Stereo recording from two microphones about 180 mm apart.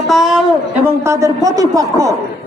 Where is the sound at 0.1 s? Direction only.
Centre (ahead or behind).